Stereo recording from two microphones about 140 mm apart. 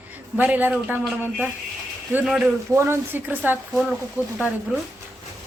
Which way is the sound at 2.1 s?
5° right (ahead or behind).